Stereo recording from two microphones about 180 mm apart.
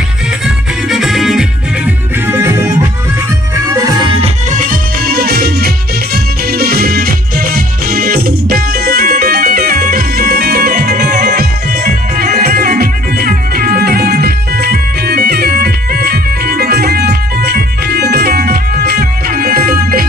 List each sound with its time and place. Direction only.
0.8 s music: centre (ahead or behind)
2.2 s music: 15° right (ahead or behind)
4.5 s music: 50° right (ahead or behind)